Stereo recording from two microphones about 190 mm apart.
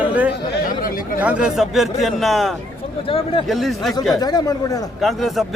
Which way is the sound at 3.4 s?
Centre (ahead or behind).